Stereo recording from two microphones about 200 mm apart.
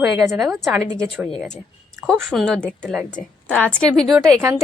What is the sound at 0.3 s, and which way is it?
A woman's voice, centre (ahead or behind).